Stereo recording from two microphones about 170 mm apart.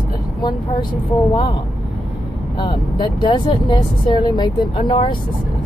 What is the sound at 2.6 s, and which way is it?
Speech, 25° left (ahead or behind).